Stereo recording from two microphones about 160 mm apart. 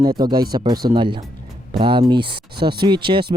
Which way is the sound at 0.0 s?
25° right (ahead or behind).